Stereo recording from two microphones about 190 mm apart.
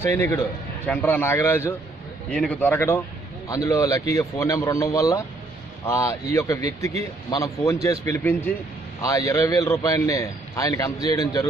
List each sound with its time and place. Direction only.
0.1 s a man's voice: 15° left (ahead or behind)